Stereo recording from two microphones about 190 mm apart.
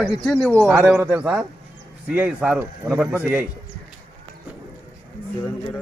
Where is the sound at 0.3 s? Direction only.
5° left (ahead or behind).